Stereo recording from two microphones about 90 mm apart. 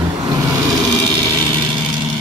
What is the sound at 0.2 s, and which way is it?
Vehicle, 40° right (ahead or behind).